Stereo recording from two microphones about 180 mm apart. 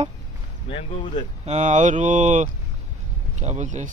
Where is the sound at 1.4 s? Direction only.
40° right (ahead or behind).